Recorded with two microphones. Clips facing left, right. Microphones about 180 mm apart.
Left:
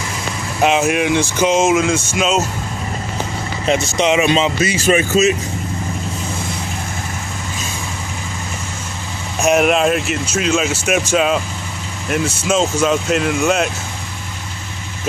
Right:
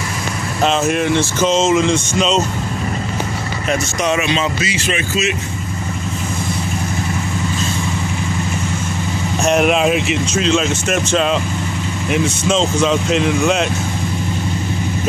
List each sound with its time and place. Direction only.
0.6 s speech: 10° left (ahead or behind)
3.6 s speech: 25° left (ahead or behind)
4.7 s speech: 40° left (ahead or behind)
9.4 s speech: 5° left (ahead or behind)